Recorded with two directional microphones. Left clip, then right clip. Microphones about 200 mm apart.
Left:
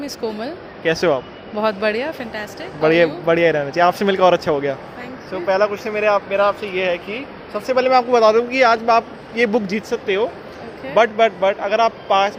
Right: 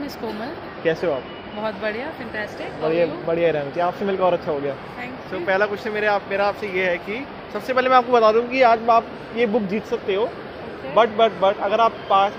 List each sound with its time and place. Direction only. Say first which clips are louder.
1.6 s speech: left 7 dB; 50° left (ahead or behind)
2.8 s speech: left 6 dB; 25° left (ahead or behind)
5.3 s speech: left 3 dB; 5° left (ahead or behind); by 12.3 s 20° left (ahead or behind)